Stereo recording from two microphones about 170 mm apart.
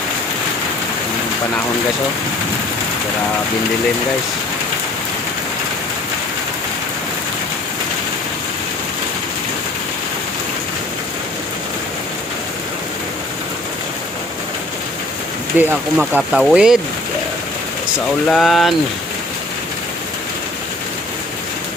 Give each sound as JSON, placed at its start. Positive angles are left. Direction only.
{"t": 15.5, "sound": "speech", "side_deg": -5}
{"t": 18.3, "sound": "speech", "side_deg": 0}